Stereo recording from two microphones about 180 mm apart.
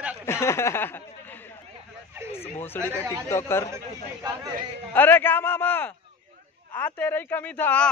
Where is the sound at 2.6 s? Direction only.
10° left (ahead or behind).